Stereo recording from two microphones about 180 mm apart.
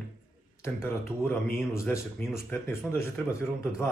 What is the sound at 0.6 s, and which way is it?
Speech, 15° left (ahead or behind).